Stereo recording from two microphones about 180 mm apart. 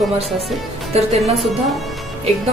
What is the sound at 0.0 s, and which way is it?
A woman's voice, centre (ahead or behind).